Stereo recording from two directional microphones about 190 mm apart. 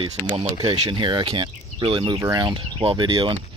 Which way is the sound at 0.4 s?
25° right (ahead or behind).